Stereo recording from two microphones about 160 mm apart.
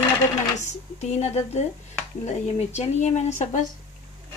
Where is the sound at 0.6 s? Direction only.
45° left (ahead or behind).